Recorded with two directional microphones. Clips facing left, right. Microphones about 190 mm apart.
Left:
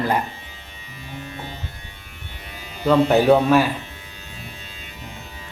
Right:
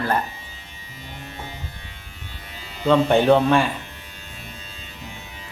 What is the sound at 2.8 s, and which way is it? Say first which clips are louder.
Speech: left 1 dB; 5° left (ahead or behind).